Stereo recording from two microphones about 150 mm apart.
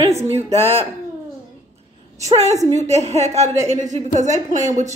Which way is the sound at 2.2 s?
45° right (ahead or behind).